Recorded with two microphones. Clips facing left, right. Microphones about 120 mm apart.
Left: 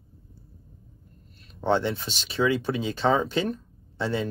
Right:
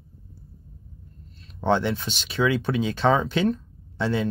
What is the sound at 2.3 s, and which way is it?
Speech, 25° left (ahead or behind).